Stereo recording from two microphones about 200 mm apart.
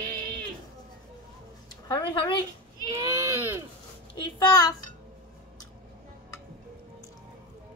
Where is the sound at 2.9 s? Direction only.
15° right (ahead or behind).